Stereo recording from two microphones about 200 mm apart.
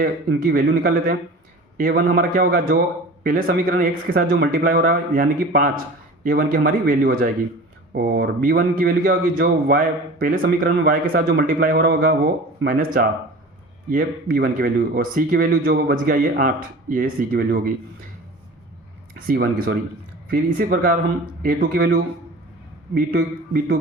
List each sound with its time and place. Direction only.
0.0 s a man's voice: 50° right (ahead or behind)
19.2 s a man's voice: 50° right (ahead or behind)